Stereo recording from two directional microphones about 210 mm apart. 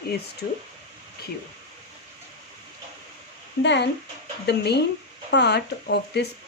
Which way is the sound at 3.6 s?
55° left (ahead or behind).